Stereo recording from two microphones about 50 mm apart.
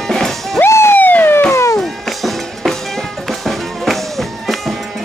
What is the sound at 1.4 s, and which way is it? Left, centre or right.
Music, left.